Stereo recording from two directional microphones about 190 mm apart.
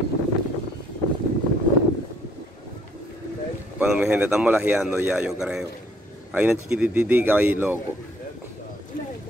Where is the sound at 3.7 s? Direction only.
5° right (ahead or behind).